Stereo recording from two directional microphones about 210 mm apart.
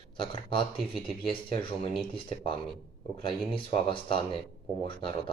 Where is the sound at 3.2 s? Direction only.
25° left (ahead or behind).